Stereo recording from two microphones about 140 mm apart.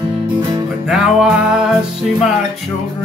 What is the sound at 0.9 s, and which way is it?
Music, 5° right (ahead or behind).